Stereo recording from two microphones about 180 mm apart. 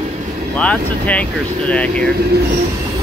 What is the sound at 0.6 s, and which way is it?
Speech, 5° left (ahead or behind).